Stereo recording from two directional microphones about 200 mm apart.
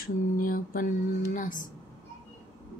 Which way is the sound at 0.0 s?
45° left (ahead or behind).